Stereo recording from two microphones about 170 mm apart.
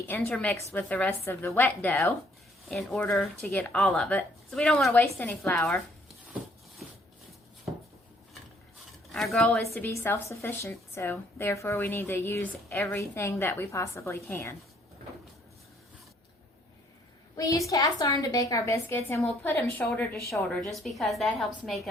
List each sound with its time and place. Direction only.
0.1 s a woman's voice: 10° left (ahead or behind)
9.1 s a woman's voice: 5° left (ahead or behind)
17.3 s a woman's voice: 20° left (ahead or behind); by 21.5 s centre (ahead or behind)